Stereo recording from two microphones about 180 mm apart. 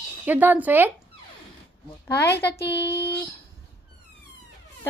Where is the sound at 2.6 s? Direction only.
70° left (ahead or behind).